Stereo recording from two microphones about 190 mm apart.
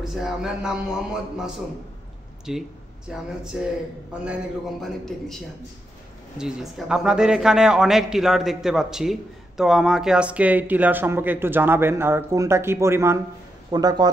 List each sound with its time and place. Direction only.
0.0 s a man's voice: 5° right (ahead or behind)
6.3 s a man's voice: 5° right (ahead or behind); by 14.0 s 20° right (ahead or behind)